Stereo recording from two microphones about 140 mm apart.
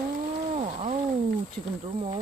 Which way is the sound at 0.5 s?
60° right (ahead or behind).